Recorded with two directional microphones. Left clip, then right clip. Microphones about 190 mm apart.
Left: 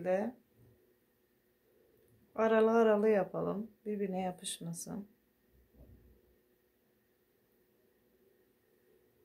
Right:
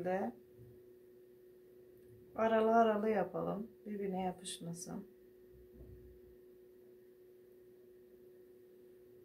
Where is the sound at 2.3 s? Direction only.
60° left (ahead or behind).